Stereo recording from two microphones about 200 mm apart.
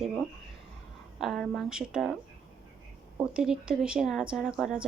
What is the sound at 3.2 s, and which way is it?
Speech, 5° right (ahead or behind).